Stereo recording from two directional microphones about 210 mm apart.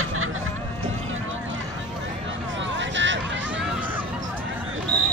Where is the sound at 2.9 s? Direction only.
60° right (ahead or behind).